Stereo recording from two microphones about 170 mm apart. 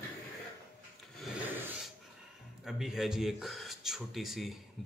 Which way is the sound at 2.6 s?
Centre (ahead or behind).